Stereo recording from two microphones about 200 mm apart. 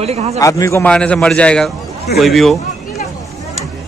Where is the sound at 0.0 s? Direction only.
30° right (ahead or behind).